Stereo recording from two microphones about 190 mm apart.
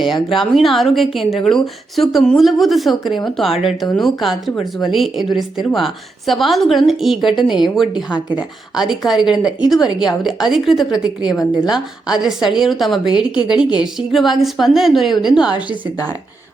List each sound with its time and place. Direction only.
0.0 s speech: centre (ahead or behind)
15.4 s a woman's voice: 20° left (ahead or behind)